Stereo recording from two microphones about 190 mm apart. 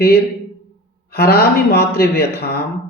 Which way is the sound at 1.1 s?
55° left (ahead or behind).